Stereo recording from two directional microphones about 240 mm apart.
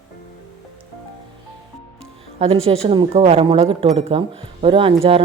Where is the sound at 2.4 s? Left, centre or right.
Right.